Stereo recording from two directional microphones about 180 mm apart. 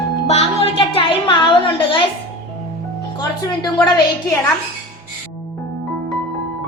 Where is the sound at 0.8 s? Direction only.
30° left (ahead or behind).